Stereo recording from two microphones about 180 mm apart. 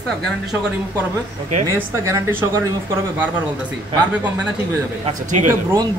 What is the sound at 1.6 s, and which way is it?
Speech, 15° right (ahead or behind).